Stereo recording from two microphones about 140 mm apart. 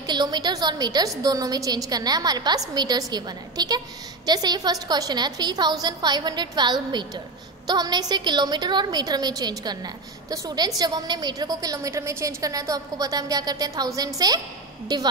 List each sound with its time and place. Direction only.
0.0 s a woman's voice: 30° right (ahead or behind)